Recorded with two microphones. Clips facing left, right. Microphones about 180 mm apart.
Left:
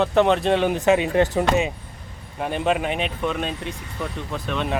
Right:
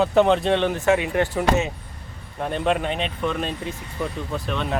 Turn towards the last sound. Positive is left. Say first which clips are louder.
# even
turn(degrees=0)  # may be behind; listen again after turning